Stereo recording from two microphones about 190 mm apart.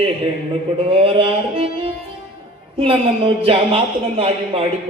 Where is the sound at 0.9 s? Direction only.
30° right (ahead or behind).